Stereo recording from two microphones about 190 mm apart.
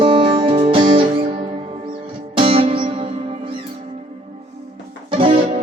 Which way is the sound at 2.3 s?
30° right (ahead or behind).